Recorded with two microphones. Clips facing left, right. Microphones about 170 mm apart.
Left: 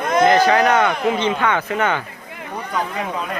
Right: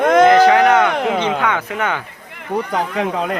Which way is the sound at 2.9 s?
90° right.